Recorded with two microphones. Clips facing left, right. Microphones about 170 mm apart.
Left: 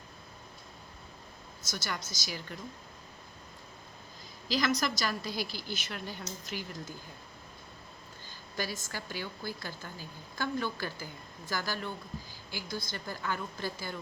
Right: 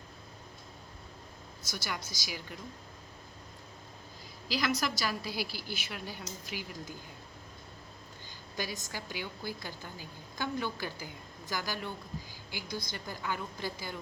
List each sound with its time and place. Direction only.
1.6 s a woman's voice: 10° right (ahead or behind)
4.4 s a woman's voice: 5° right (ahead or behind)
8.5 s a woman's voice: 15° right (ahead or behind)